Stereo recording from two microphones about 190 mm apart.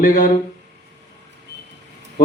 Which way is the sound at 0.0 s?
45° left (ahead or behind).